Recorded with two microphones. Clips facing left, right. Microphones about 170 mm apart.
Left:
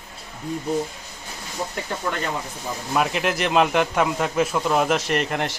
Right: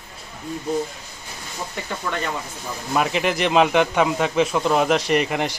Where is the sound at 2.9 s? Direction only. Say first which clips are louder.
Right 1 dB; centre (ahead or behind).